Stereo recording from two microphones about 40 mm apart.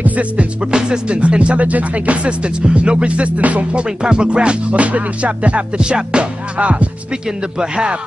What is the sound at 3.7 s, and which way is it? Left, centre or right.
Music, right.